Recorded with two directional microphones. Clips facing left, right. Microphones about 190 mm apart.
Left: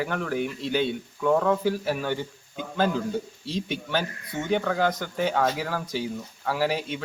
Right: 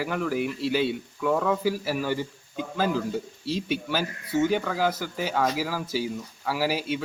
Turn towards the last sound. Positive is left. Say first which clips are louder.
# even
turn(degrees=-5)  # may be behind; listen again after turning